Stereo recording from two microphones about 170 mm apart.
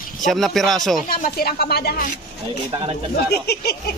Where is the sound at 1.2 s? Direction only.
60° left (ahead or behind).